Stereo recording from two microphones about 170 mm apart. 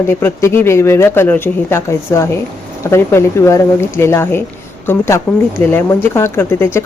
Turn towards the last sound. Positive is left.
turn(degrees=15)  # may be behind; listen again after turning